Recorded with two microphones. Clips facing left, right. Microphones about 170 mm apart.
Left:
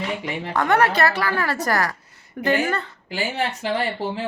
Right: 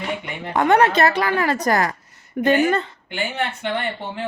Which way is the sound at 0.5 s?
20° right (ahead or behind).